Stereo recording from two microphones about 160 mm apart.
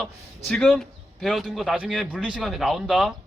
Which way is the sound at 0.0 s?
5° left (ahead or behind).